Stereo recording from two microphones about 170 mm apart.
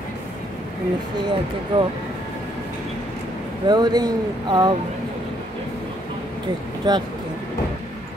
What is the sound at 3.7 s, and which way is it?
Speech, 25° right (ahead or behind).